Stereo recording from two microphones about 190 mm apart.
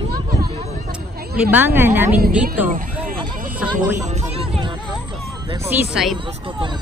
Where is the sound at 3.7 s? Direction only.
35° right (ahead or behind).